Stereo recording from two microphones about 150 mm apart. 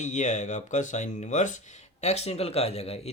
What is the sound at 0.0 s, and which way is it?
Speech, 55° left (ahead or behind).